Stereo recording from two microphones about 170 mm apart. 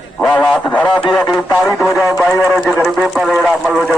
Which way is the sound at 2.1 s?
15° left (ahead or behind).